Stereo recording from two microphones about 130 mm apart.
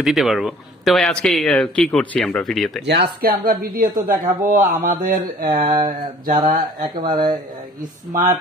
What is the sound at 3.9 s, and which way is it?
Speech, 90° right.